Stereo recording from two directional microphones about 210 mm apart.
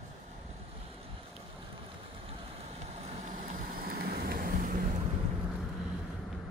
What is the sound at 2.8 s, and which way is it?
Vehicle, 30° right (ahead or behind).